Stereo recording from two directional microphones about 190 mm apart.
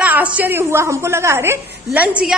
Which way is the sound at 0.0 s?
10° right (ahead or behind).